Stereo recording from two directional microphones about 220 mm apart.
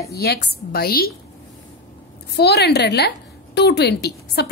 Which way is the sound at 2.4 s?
50° left (ahead or behind).